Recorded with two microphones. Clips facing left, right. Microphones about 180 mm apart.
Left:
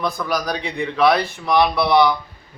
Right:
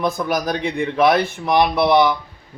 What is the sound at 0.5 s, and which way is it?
Speech, 50° right (ahead or behind).